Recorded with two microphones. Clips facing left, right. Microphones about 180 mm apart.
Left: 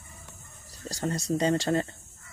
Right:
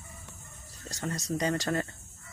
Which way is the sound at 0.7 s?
35° left (ahead or behind).